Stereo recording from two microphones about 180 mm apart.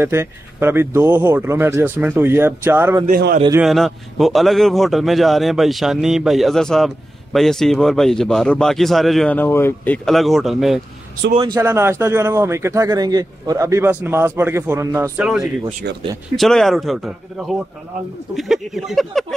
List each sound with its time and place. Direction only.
0.0 s a man's voice: 10° right (ahead or behind)
3.1 s a man's voice: 55° right (ahead or behind)
3.6 s a man's voice: centre (ahead or behind)
10.0 s a man's voice: centre (ahead or behind)
11.3 s speech: 25° right (ahead or behind)
11.6 s a man's voice: 15° right (ahead or behind)
15.1 s a man's voice: 5° right (ahead or behind)